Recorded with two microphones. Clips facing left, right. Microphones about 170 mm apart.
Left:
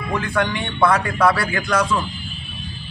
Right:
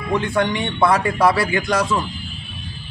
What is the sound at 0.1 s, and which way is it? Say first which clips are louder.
A man's voice: right 3 dB; 25° right (ahead or behind).